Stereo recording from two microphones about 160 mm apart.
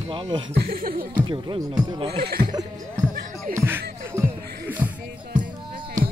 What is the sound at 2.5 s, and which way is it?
Speech, 25° right (ahead or behind).